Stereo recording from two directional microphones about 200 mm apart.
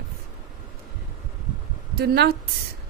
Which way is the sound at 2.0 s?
50° right (ahead or behind).